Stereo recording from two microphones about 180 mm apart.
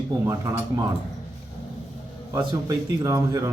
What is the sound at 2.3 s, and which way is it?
Speech, 20° right (ahead or behind).